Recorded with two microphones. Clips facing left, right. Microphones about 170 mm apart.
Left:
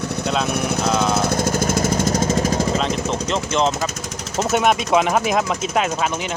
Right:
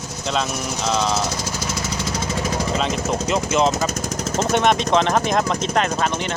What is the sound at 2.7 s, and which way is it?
Speech, centre (ahead or behind).